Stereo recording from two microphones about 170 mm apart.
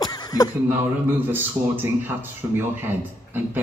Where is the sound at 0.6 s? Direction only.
10° right (ahead or behind).